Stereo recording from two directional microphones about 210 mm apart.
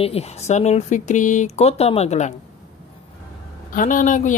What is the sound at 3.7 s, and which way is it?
Mantra, 40° left (ahead or behind).